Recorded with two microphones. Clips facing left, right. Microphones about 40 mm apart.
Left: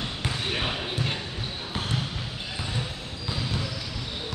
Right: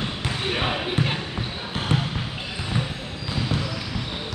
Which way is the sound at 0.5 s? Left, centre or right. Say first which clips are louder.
Right 6 dB; centre.